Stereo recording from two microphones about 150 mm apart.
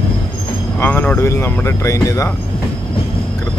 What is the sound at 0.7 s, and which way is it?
Speech, 15° left (ahead or behind).